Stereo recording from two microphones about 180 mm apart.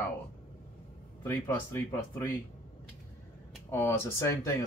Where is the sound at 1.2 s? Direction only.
10° left (ahead or behind).